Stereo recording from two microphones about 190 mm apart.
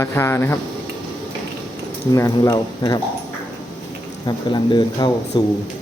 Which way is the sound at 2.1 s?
20° left (ahead or behind).